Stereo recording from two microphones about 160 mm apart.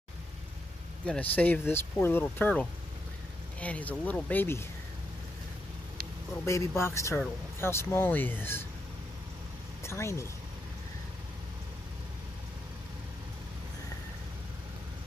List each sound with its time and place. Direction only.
1.0 s speech: 10° left (ahead or behind)
6.4 s speech: 20° left (ahead or behind)
9.8 s speech: 15° left (ahead or behind)